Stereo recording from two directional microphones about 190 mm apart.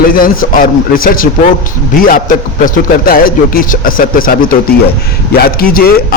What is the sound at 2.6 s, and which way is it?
Speech, 50° left (ahead or behind).